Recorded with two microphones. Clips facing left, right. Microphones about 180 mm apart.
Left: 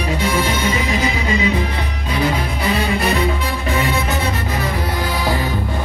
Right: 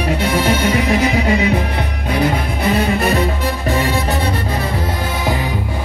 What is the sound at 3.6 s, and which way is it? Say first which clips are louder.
Music: right 2 dB; 35° right (ahead or behind).